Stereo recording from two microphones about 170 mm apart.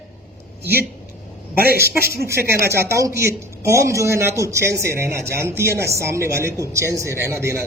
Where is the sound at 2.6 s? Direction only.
15° right (ahead or behind).